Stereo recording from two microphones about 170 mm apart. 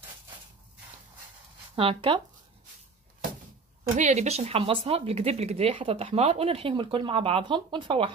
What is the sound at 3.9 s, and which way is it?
Speech, 45° right (ahead or behind).